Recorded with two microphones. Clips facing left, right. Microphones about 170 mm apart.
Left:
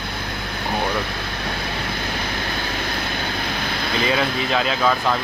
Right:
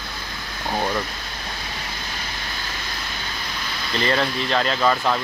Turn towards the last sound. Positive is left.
turn(degrees=0)  # may be behind; listen again after turning